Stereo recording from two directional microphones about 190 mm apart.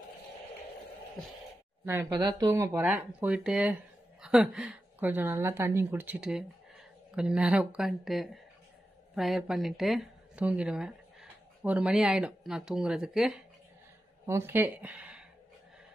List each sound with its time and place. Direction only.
1.9 s a woman's voice: 20° right (ahead or behind); by 13.4 s centre (ahead or behind)
14.2 s speech: 15° right (ahead or behind)